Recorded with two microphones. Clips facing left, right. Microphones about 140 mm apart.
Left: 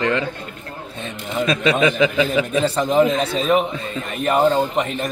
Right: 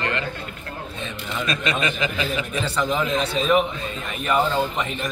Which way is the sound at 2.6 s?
45° left (ahead or behind).